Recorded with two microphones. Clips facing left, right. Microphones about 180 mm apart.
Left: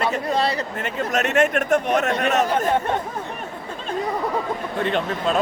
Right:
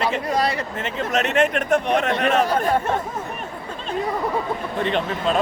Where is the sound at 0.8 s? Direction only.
45° left (ahead or behind).